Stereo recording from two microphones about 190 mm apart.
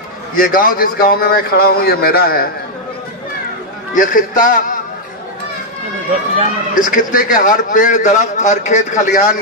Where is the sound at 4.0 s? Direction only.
45° left (ahead or behind).